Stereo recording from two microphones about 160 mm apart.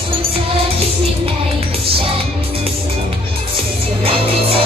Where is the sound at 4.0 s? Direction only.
35° right (ahead or behind).